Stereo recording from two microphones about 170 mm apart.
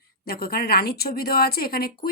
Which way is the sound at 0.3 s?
65° left (ahead or behind).